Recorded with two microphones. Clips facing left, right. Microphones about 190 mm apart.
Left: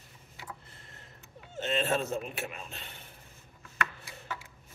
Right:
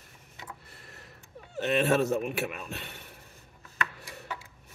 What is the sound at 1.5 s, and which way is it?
Speech, 65° right (ahead or behind).